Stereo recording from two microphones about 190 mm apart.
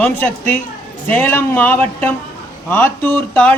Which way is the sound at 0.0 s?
10° left (ahead or behind).